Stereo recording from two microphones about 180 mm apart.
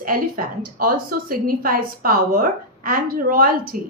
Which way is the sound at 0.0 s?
50° right (ahead or behind).